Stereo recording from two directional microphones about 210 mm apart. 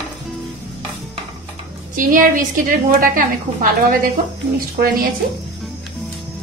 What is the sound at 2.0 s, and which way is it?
A woman's voice, 40° right (ahead or behind).